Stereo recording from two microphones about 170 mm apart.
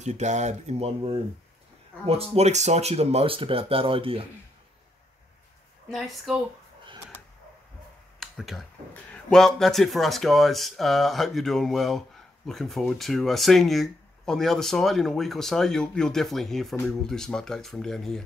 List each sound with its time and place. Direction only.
0.0 s speech: 45° right (ahead or behind)
5.9 s speech: centre (ahead or behind)
8.2 s speech: centre (ahead or behind)